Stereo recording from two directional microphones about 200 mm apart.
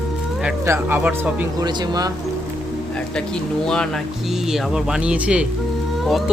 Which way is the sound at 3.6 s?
5° left (ahead or behind).